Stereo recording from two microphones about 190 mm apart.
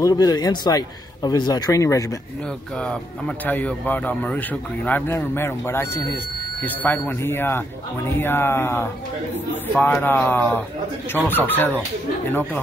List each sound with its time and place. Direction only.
0.0 s speech: 20° left (ahead or behind)
2.8 s speech: 5° left (ahead or behind)